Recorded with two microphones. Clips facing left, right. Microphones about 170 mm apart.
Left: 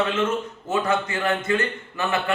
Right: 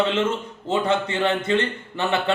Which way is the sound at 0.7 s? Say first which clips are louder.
Right 2 dB; 30° right (ahead or behind).